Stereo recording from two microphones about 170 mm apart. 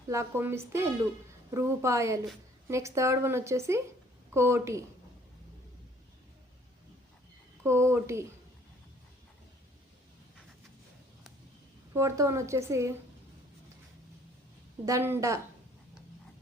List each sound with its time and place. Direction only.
0.1 s speech: 15° right (ahead or behind)
7.6 s speech: 15° right (ahead or behind)
11.9 s speech: 15° right (ahead or behind)
14.8 s speech: 15° right (ahead or behind)